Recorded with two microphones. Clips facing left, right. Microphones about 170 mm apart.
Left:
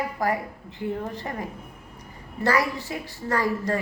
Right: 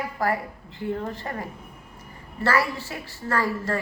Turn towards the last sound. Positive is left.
turn(degrees=15)  # may be behind; listen again after turning